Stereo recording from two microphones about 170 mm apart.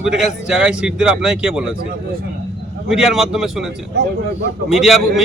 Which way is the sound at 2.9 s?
Centre (ahead or behind).